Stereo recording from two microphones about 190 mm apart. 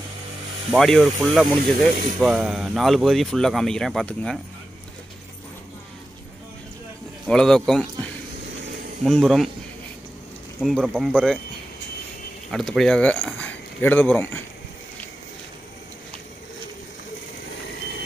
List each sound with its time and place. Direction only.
0.7 s speech: centre (ahead or behind)
7.2 s speech: 5° left (ahead or behind)
9.0 s speech: centre (ahead or behind)
10.6 s speech: centre (ahead or behind)
12.4 s speech: centre (ahead or behind)